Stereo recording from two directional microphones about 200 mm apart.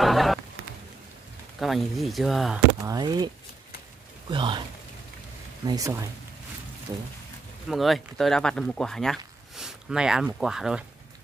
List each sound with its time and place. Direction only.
0.0 s a sound: centre (ahead or behind)
1.6 s speech: centre (ahead or behind)
2.8 s speech: 20° right (ahead or behind)
4.3 s speech: 25° right (ahead or behind)
5.7 s speech: 15° right (ahead or behind)
7.7 s speech: centre (ahead or behind)